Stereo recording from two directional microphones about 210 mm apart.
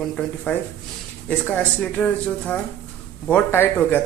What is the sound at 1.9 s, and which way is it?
Speech, 5° left (ahead or behind).